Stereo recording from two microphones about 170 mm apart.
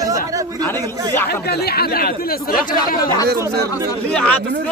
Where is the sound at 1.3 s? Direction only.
65° left (ahead or behind).